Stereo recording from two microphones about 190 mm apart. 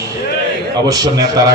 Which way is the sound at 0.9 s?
20° right (ahead or behind).